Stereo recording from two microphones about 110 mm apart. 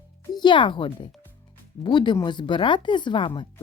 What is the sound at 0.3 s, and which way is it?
Speech, 45° left (ahead or behind).